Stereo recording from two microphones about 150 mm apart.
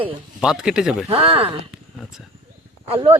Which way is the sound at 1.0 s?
40° right (ahead or behind).